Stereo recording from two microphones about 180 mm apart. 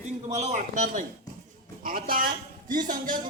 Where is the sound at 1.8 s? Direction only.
50° right (ahead or behind).